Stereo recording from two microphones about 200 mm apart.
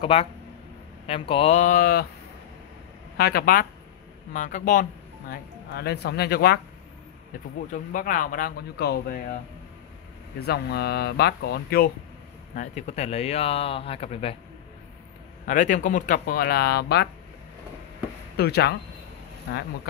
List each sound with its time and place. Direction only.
0.0 s speech: 30° left (ahead or behind); by 2.0 s 45° left (ahead or behind)
3.2 s speech: 50° left (ahead or behind)
5.3 s speech: 55° left (ahead or behind)
7.7 s speech: 40° left (ahead or behind)
10.4 s speech: 55° left (ahead or behind)
12.5 s speech: 35° left (ahead or behind)
15.4 s speech: 40° left (ahead or behind)
18.3 s speech: 55° left (ahead or behind)